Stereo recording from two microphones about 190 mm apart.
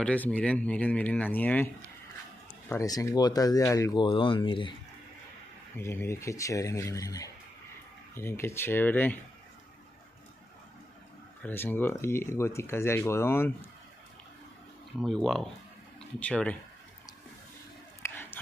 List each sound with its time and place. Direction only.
0.0 s speech: 5° left (ahead or behind)
2.7 s speech: 15° left (ahead or behind)
5.8 s speech: 15° left (ahead or behind)
11.4 s speech: 10° left (ahead or behind)
15.0 s speech: centre (ahead or behind)
18.0 s a sound: 10° left (ahead or behind)